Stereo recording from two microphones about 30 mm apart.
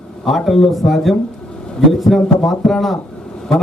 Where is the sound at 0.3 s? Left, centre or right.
Centre.